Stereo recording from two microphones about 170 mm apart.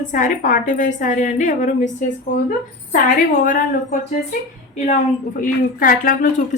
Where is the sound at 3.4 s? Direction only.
50° left (ahead or behind).